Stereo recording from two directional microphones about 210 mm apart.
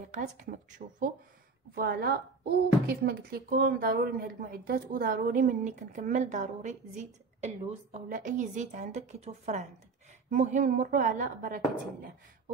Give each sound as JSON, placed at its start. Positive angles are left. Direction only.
{"t": 0.1, "sound": "a woman's voice", "side_deg": -40}